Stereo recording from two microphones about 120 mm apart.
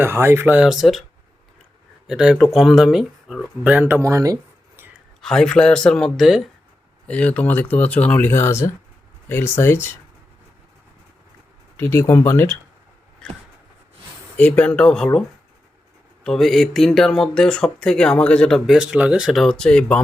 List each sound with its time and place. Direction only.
0.0 s speech: 20° right (ahead or behind)
0.6 s speech: centre (ahead or behind)
2.0 s speech: 5° right (ahead or behind)
3.6 s speech: 10° right (ahead or behind)
5.2 s speech: 5° left (ahead or behind)
7.1 s speech: 10° left (ahead or behind)
11.8 s speech: 20° left (ahead or behind)
13.2 s a sound: 5° left (ahead or behind)
14.3 s speech: 10° left (ahead or behind)
16.2 s speech: centre (ahead or behind)